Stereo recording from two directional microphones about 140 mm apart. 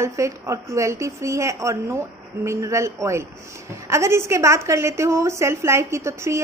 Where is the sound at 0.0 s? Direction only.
20° right (ahead or behind).